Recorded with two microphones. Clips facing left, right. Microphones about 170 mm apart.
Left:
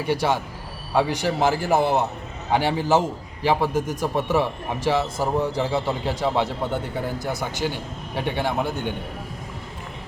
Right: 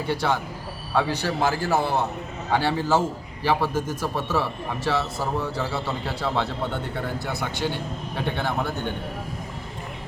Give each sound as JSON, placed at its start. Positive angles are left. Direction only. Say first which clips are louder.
{"t": 0.0, "sound": "a man's voice", "louder": "left 2 dB", "side_deg": 15}